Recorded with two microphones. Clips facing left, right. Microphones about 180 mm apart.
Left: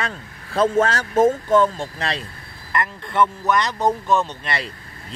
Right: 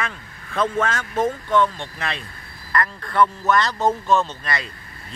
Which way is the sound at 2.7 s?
20° left (ahead or behind).